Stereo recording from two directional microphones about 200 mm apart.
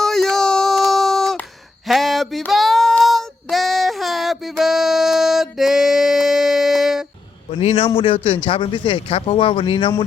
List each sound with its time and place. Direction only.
0.0 s a sound: centre (ahead or behind)
1.9 s child singing: centre (ahead or behind)
7.6 s a man's voice: 30° left (ahead or behind)